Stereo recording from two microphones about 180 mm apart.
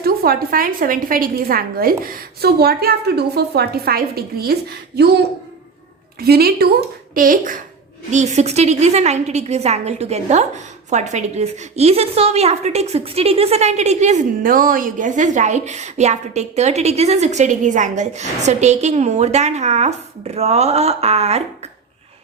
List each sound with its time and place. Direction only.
0.0 s a woman's voice: 55° right (ahead or behind); by 21.4 s 35° right (ahead or behind)